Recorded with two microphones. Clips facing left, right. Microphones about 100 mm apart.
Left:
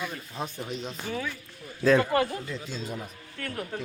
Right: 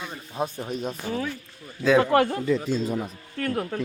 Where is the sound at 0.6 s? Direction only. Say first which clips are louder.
Right 4 dB; 50° right (ahead or behind).